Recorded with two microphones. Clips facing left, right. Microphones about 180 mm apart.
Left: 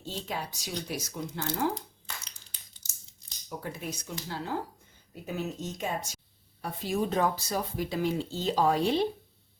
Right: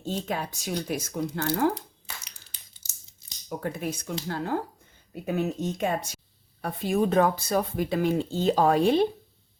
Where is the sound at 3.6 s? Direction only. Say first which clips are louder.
Right 7 dB; 55° right (ahead or behind).